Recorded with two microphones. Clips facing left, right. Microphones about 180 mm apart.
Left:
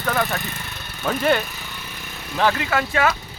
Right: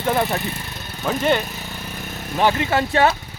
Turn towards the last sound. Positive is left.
turn(degrees=-30)  # may be behind; listen again after turning